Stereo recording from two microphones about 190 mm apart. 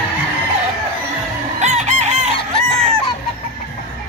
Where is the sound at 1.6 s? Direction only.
35° right (ahead or behind).